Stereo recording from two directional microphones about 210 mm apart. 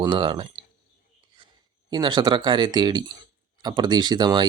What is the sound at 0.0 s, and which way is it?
Speech, 20° right (ahead or behind).